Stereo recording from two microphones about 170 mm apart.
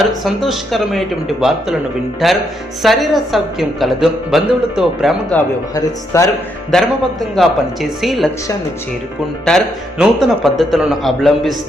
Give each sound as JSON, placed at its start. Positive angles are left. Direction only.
{"t": 0.3, "sound": "a woman's voice", "side_deg": 0}
{"t": 5.3, "sound": "speech", "side_deg": 10}
{"t": 5.7, "sound": "speech", "side_deg": 20}
{"t": 6.7, "sound": "a woman's voice", "side_deg": 0}
{"t": 9.5, "sound": "a woman's voice", "side_deg": 0}